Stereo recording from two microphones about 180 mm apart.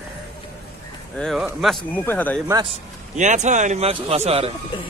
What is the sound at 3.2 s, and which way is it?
A man's voice, 40° right (ahead or behind).